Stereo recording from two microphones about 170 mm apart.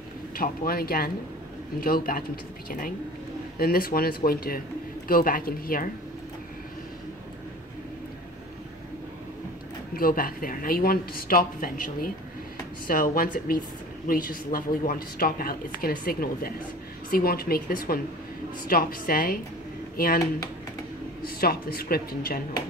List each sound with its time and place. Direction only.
0.4 s a woman's voice: 60° left (ahead or behind)
3.5 s a woman's voice: 60° left (ahead or behind)
9.9 s a woman's voice: 55° left (ahead or behind)
21.2 s a woman's voice: 65° left (ahead or behind)